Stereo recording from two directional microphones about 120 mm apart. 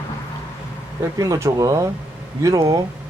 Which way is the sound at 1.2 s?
25° right (ahead or behind).